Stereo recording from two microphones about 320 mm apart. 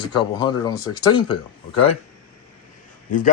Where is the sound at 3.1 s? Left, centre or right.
Left.